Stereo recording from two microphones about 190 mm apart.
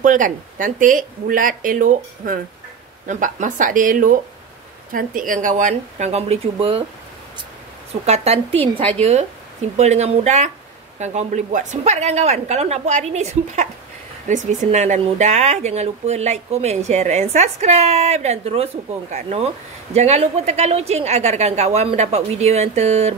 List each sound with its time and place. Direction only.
0.0 s speech: 45° right (ahead or behind)
7.9 s speech: 35° right (ahead or behind)
9.8 s speech: 35° right (ahead or behind)